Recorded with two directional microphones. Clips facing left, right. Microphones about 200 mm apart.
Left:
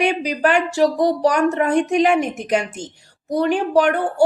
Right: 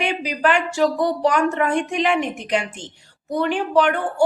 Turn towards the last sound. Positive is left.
turn(degrees=40)  # may be behind; listen again after turning